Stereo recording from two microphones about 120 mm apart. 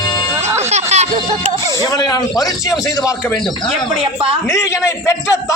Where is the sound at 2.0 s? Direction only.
35° left (ahead or behind).